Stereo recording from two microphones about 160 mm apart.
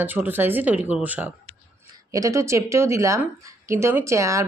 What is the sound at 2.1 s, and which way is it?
A woman's voice, 20° right (ahead or behind).